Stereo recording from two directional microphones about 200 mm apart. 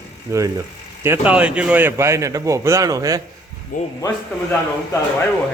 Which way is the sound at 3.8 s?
40° left (ahead or behind).